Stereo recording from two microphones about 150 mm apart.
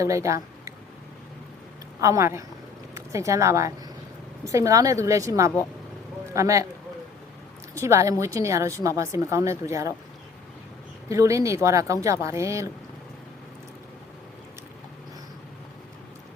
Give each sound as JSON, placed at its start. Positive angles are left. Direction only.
{"t": 0.0, "sound": "speech", "side_deg": -20}
{"t": 2.0, "sound": "a woman's voice", "side_deg": -20}
{"t": 7.7, "sound": "a woman's voice", "side_deg": -20}
{"t": 11.1, "sound": "a woman's voice", "side_deg": -20}